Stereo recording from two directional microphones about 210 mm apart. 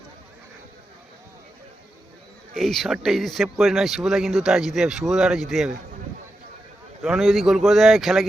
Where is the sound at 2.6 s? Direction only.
Centre (ahead or behind).